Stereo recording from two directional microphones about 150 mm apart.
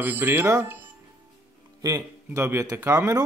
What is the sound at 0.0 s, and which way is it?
Speech, 15° right (ahead or behind).